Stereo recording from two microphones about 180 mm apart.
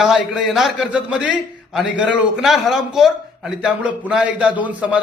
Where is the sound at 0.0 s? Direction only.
Centre (ahead or behind).